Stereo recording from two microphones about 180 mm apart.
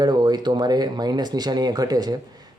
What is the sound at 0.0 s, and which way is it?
Speech, 25° right (ahead or behind).